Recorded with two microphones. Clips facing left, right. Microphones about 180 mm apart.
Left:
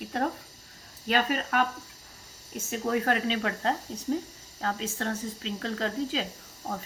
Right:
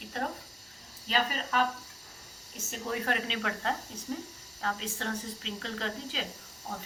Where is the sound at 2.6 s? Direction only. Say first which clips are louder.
Left 6 dB; 50° left (ahead or behind).